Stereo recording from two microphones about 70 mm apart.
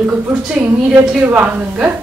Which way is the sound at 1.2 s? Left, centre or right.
Right.